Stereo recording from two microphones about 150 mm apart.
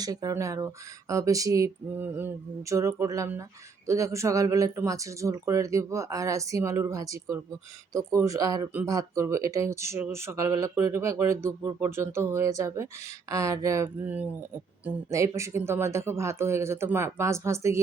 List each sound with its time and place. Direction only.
0.0 s speech: 25° right (ahead or behind)